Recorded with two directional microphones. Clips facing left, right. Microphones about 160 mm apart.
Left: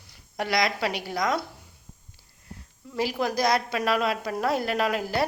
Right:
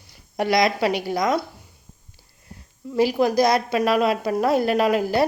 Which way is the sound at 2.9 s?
15° right (ahead or behind).